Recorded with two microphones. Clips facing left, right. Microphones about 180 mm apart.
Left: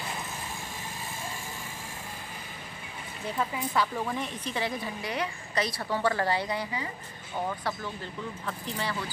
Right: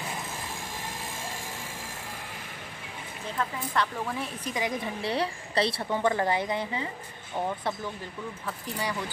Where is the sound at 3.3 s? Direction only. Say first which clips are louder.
Left 1 dB; 5° left (ahead or behind).